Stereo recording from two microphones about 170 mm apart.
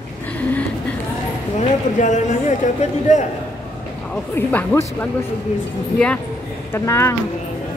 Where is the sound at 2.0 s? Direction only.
45° left (ahead or behind).